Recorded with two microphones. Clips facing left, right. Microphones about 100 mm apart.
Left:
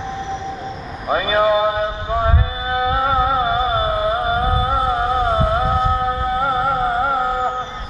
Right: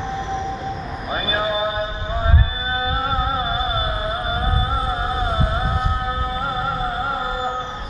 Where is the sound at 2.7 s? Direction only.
60° left (ahead or behind).